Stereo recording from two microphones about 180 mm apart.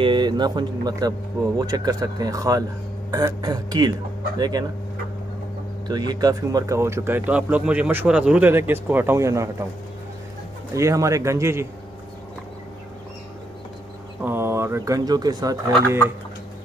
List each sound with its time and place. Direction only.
0.0 s speech: 25° right (ahead or behind)
5.9 s speech: 20° right (ahead or behind)
10.7 s speech: 15° right (ahead or behind)
14.2 s speech: 15° right (ahead or behind)